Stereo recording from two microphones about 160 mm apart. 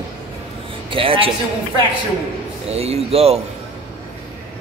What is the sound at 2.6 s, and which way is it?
Speech, 40° right (ahead or behind).